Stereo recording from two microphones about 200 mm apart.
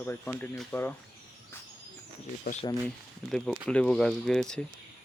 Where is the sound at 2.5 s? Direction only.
50° left (ahead or behind).